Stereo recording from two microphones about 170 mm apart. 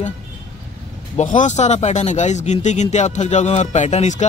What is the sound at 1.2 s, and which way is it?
A man's voice, 45° left (ahead or behind).